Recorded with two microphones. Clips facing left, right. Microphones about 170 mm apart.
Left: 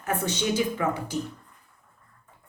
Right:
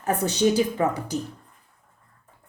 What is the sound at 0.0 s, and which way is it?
A woman's voice, 40° right (ahead or behind).